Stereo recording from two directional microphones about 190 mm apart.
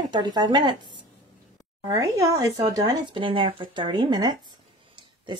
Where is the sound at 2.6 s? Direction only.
25° right (ahead or behind).